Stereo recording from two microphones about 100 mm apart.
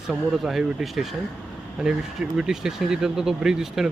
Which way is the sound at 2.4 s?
5° right (ahead or behind).